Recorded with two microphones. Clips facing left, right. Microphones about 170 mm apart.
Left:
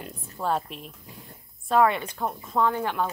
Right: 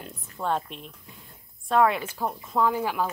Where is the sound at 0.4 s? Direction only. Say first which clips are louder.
Left 1 dB; 5° left (ahead or behind).